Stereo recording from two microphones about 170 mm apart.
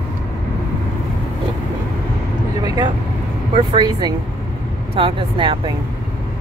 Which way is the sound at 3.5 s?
25° right (ahead or behind).